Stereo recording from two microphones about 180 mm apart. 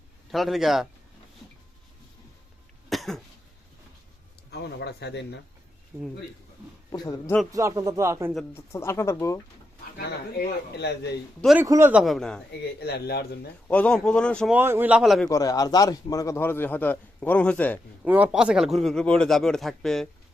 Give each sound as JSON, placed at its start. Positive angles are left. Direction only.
{"t": 0.3, "sound": "speech", "side_deg": 0}
{"t": 2.9, "sound": "cough", "side_deg": 0}
{"t": 4.5, "sound": "speech", "side_deg": 65}
{"t": 5.9, "sound": "speech", "side_deg": -5}
{"t": 6.9, "sound": "a man's voice", "side_deg": 20}
{"t": 7.5, "sound": "a man's voice", "side_deg": -20}
{"t": 8.5, "sound": "a man's voice", "side_deg": 15}
{"t": 10.0, "sound": "speech", "side_deg": 65}
{"t": 11.6, "sound": "speech", "side_deg": -15}
{"t": 12.8, "sound": "a man's voice", "side_deg": 65}
{"t": 13.7, "sound": "speech", "side_deg": 5}
{"t": 14.5, "sound": "a man's voice", "side_deg": -10}
{"t": 15.3, "sound": "a man's voice", "side_deg": 20}
{"t": 18.0, "sound": "speech", "side_deg": -10}